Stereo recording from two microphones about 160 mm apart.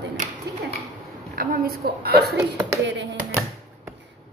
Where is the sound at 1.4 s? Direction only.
65° right (ahead or behind).